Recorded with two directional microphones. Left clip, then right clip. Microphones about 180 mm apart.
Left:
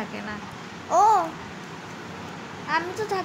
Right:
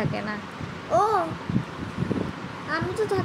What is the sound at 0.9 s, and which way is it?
Speech, 20° left (ahead or behind).